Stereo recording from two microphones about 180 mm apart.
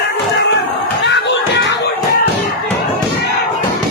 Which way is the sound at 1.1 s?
75° left (ahead or behind).